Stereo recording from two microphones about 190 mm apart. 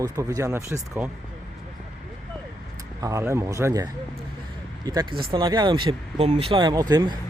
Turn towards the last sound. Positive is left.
turn(degrees=-20)  # may be behind; listen again after turning